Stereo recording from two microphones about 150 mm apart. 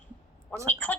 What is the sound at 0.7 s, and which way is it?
Speech, 10° left (ahead or behind).